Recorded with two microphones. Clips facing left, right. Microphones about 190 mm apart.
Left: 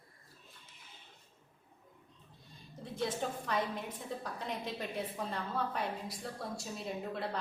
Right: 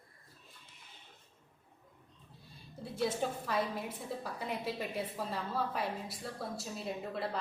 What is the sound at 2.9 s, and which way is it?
A woman's voice, 5° right (ahead or behind).